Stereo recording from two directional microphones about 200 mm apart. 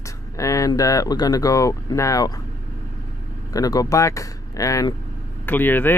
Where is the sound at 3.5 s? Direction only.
15° left (ahead or behind).